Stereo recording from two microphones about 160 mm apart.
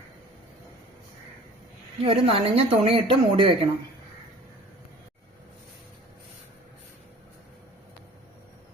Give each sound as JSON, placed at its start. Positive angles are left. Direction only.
{"t": 2.0, "sound": "speech", "side_deg": -35}